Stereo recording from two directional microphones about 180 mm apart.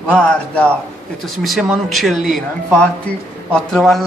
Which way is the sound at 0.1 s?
5° left (ahead or behind).